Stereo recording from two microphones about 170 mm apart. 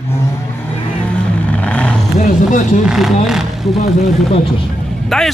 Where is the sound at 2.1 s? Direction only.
45° left (ahead or behind).